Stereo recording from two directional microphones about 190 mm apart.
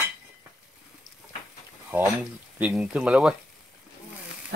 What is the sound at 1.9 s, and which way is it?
Speech, 10° right (ahead or behind).